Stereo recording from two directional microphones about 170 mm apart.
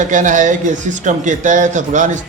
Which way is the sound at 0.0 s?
50° right (ahead or behind).